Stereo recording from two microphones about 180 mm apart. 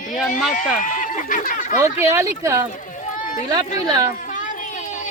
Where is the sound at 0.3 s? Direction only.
45° left (ahead or behind).